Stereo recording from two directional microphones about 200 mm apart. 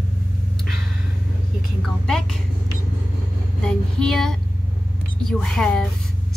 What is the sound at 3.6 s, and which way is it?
A woman's voice, 5° left (ahead or behind).